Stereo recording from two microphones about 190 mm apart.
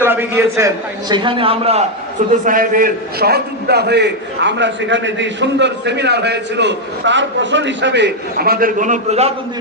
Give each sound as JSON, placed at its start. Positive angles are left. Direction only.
{"t": 0.0, "sound": "a man's voice", "side_deg": -10}
{"t": 2.3, "sound": "a man's voice", "side_deg": -45}